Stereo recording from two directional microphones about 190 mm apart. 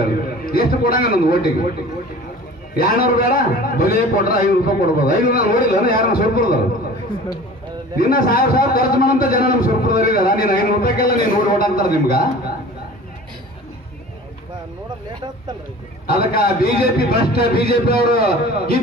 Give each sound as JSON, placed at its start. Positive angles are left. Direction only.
{"t": 0.5, "sound": "a man's voice", "side_deg": 50}
{"t": 2.7, "sound": "a man's voice", "side_deg": 50}
{"t": 8.0, "sound": "a man's voice", "side_deg": 50}
{"t": 16.1, "sound": "a man's voice", "side_deg": 50}